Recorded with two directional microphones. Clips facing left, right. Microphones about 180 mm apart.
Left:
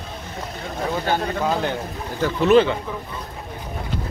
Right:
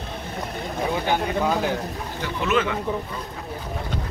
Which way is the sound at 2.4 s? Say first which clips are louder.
Left 8 dB; 35° left (ahead or behind).